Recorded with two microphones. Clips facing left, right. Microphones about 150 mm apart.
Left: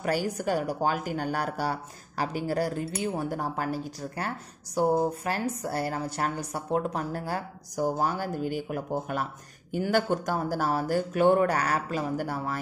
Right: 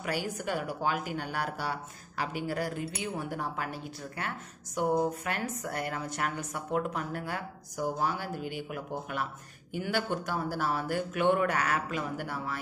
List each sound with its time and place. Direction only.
0.0 s a woman's voice: 40° left (ahead or behind)